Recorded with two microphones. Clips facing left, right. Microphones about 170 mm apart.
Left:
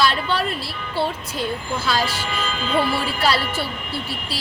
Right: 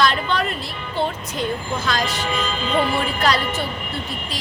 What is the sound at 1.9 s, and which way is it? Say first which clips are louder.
Speech: even; 10° left (ahead or behind).